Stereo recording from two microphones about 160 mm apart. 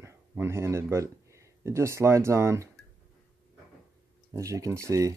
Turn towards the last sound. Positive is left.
turn(degrees=-20)  # may be behind; listen again after turning